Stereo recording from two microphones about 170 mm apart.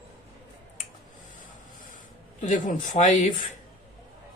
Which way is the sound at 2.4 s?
50° left (ahead or behind).